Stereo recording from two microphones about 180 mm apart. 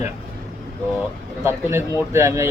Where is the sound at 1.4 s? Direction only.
15° right (ahead or behind).